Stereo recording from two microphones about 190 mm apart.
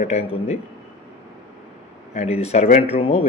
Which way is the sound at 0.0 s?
35° left (ahead or behind).